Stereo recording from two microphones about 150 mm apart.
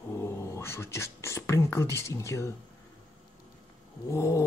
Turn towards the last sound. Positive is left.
turn(degrees=20)  # may be behind; listen again after turning